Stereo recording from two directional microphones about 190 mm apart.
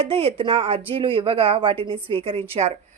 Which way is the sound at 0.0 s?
30° right (ahead or behind).